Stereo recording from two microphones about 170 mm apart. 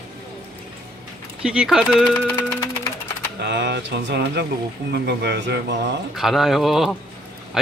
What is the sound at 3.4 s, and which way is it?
A man's voice, 80° right.